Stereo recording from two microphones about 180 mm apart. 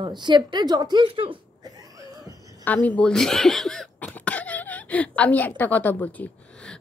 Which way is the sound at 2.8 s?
5° left (ahead or behind).